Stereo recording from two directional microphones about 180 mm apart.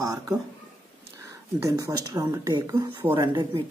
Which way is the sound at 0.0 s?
20° right (ahead or behind).